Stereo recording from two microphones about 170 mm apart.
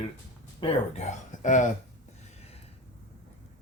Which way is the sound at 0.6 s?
40° left (ahead or behind).